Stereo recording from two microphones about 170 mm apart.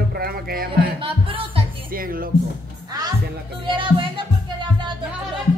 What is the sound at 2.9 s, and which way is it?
Music, 20° right (ahead or behind).